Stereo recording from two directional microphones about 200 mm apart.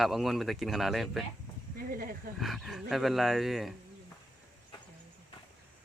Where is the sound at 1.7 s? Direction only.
45° right (ahead or behind).